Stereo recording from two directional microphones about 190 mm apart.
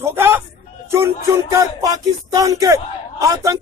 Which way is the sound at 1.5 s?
20° right (ahead or behind).